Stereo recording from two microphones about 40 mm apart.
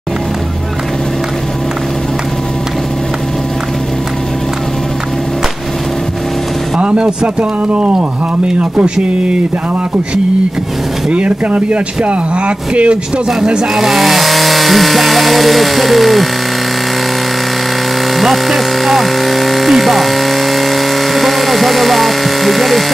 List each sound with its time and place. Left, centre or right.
6.8 s speech: right
11.1 s speech: right
13.7 s speech: centre
18.1 s speech: centre